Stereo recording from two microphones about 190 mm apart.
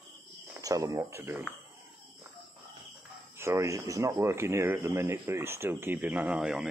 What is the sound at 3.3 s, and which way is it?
Speech, 15° right (ahead or behind).